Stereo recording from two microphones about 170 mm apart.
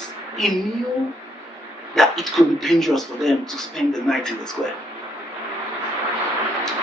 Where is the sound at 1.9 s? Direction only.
Centre (ahead or behind).